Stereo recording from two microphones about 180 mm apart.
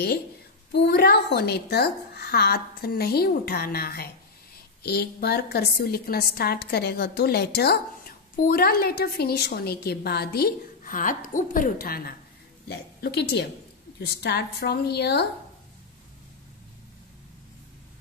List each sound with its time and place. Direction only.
0.7 s a woman's voice: 65° left (ahead or behind)